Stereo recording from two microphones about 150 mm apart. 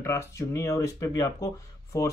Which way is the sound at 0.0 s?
20° left (ahead or behind).